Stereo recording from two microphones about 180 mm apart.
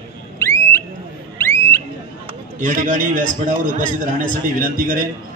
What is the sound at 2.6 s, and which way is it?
A man's voice, 45° right (ahead or behind).